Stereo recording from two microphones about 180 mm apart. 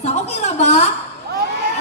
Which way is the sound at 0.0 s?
35° left (ahead or behind).